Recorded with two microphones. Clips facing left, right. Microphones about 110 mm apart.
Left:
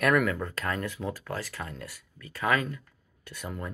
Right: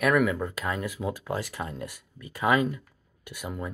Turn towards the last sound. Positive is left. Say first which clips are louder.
# right 2 dB
turn(degrees=-10)  # may be behind; listen again after turning